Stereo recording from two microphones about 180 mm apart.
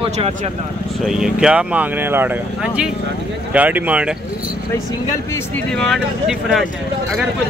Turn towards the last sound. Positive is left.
turn(degrees=0)  # may be behind; listen again after turning